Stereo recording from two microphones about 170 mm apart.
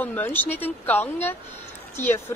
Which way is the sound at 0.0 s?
10° left (ahead or behind).